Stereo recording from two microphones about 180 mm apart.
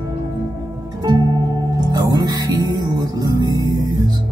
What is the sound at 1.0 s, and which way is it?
Music, 20° right (ahead or behind).